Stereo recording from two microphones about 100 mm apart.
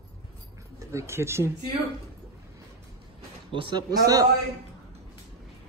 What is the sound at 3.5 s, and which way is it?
Speech, 60° right (ahead or behind).